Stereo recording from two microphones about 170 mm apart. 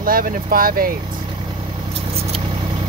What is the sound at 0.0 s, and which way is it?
Speech, 55° right (ahead or behind).